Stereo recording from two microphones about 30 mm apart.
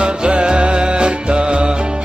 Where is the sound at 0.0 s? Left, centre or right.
Right.